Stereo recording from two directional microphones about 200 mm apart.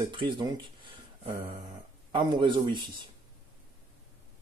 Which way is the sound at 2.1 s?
25° right (ahead or behind).